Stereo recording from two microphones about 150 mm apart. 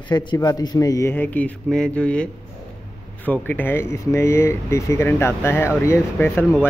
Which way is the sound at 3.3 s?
10° left (ahead or behind).